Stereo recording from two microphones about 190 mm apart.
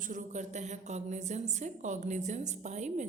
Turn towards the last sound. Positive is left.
turn(degrees=-40)  # may be behind; listen again after turning